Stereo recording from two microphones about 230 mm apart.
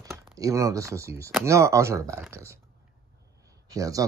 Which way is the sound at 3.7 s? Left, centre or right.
Centre.